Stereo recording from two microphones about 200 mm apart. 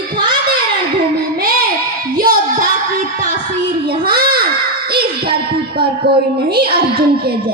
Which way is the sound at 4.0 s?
50° right (ahead or behind).